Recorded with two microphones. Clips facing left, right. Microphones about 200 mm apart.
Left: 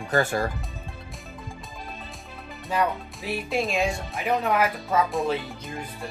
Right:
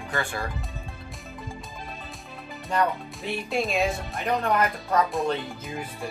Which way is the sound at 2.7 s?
5° left (ahead or behind).